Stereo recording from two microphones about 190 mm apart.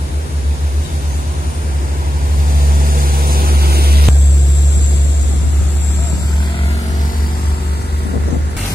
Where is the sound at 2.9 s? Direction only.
50° right (ahead or behind).